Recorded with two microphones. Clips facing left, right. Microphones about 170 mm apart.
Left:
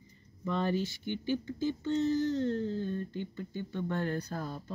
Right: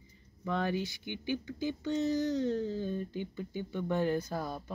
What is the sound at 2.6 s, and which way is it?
Speech, 5° right (ahead or behind).